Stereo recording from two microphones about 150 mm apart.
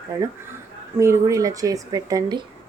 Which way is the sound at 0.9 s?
20° right (ahead or behind).